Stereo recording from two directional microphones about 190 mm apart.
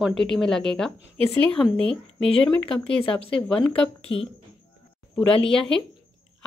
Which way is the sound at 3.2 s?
25° left (ahead or behind).